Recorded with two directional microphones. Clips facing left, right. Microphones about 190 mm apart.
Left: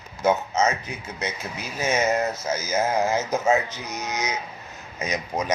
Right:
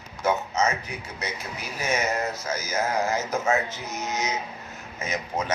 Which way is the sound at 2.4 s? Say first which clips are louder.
Left 3 dB; 20° left (ahead or behind).